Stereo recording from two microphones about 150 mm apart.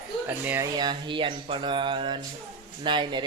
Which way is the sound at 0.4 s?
15° right (ahead or behind).